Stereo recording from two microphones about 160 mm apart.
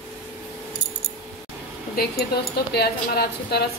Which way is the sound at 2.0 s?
70° left (ahead or behind).